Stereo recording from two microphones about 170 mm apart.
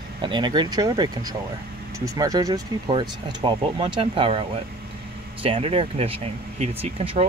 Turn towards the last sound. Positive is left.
turn(degrees=-35)  # may be behind; listen again after turning